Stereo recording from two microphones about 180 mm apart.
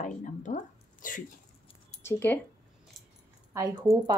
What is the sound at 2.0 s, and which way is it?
Speech, 15° left (ahead or behind).